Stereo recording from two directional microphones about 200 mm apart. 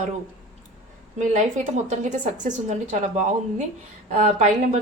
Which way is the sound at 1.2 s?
35° right (ahead or behind).